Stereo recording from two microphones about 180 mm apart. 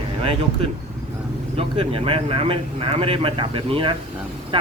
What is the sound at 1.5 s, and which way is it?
Speech, 30° right (ahead or behind).